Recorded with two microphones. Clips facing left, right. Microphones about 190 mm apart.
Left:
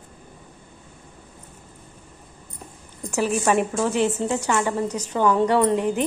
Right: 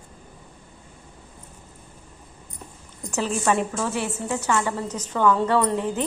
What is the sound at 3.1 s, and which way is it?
A woman's voice, 15° left (ahead or behind).